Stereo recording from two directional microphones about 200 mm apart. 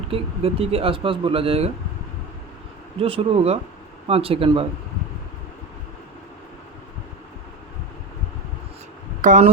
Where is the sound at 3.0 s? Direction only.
30° right (ahead or behind).